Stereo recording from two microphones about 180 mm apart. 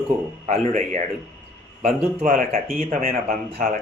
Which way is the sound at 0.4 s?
40° right (ahead or behind).